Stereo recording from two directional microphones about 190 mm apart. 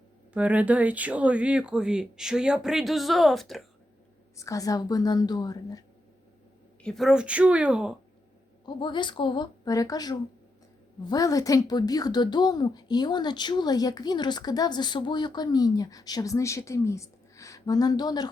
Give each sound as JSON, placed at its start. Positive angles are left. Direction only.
{"t": 0.3, "sound": "speech", "side_deg": -5}
{"t": 4.4, "sound": "a woman's voice", "side_deg": 15}
{"t": 6.8, "sound": "speech", "side_deg": 0}
{"t": 8.6, "sound": "a woman's voice", "side_deg": 25}